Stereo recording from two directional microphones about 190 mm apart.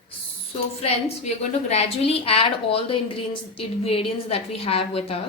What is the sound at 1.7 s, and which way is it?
A woman's voice, 30° left (ahead or behind).